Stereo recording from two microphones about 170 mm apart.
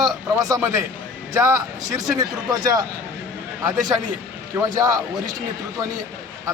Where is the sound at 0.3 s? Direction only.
20° right (ahead or behind).